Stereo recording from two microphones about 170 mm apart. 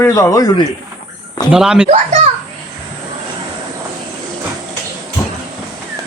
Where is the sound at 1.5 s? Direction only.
5° right (ahead or behind).